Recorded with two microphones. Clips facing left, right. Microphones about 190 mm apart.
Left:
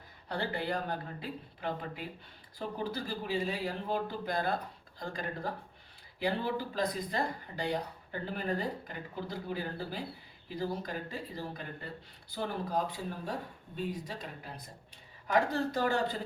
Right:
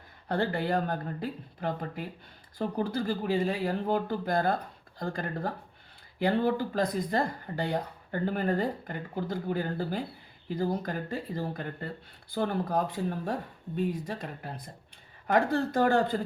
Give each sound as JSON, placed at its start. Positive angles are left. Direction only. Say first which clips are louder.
{"t": 0.3, "sound": "speech", "louder": "right 6 dB", "side_deg": -50}